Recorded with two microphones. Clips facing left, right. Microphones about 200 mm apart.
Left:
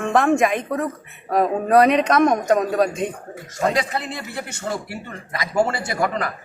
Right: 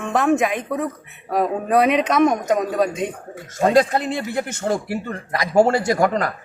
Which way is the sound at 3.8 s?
45° right (ahead or behind).